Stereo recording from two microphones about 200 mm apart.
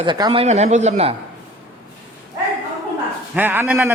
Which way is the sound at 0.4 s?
35° right (ahead or behind).